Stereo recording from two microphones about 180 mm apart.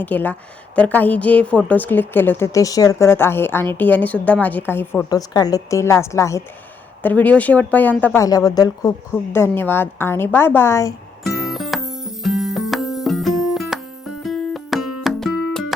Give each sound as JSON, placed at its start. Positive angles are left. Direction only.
{"t": 0.0, "sound": "a woman's voice", "side_deg": 10}
{"t": 5.0, "sound": "a woman's voice", "side_deg": 20}
{"t": 11.2, "sound": "music", "side_deg": 0}